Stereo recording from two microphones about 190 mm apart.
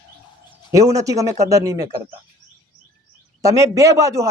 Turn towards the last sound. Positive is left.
turn(degrees=-15)  # may be behind; listen again after turning